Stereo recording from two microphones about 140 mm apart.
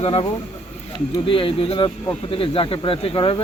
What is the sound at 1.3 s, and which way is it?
Speech, 40° left (ahead or behind).